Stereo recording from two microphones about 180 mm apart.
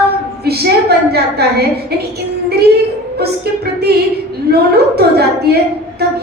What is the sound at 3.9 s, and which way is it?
A woman's voice, 65° right (ahead or behind).